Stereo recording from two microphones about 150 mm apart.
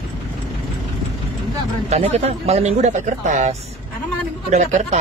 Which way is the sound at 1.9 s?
45° right (ahead or behind).